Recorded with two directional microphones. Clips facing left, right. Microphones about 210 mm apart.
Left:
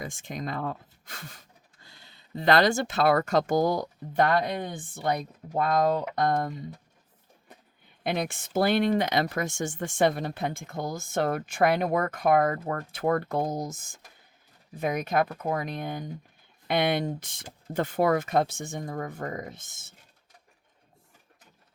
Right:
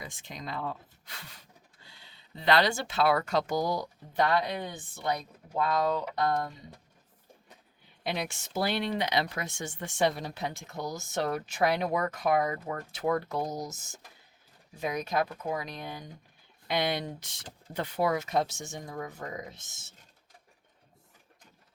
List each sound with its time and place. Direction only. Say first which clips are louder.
0.0 s speech: left 7 dB; 50° left (ahead or behind)
8.0 s speech: left 5 dB; 50° left (ahead or behind)